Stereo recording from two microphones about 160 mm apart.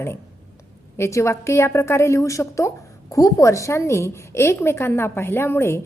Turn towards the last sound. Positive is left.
turn(degrees=15)  # may be behind; listen again after turning